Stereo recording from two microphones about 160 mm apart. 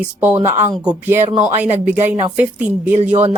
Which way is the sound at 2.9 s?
45° right (ahead or behind).